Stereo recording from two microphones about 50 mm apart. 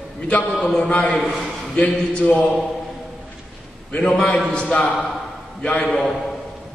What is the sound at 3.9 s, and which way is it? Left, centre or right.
A man's voice, left.